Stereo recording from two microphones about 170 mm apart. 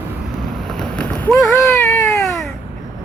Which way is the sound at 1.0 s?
5° left (ahead or behind).